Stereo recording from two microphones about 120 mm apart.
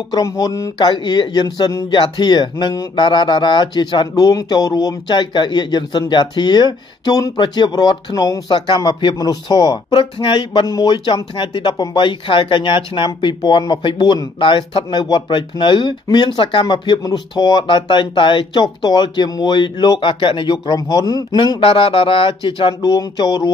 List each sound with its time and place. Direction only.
0.1 s speech: 30° left (ahead or behind)
0.7 s speech: 40° left (ahead or behind)
21.4 s speech: 45° left (ahead or behind)